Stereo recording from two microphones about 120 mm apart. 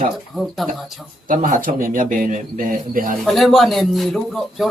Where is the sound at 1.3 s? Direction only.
90° right.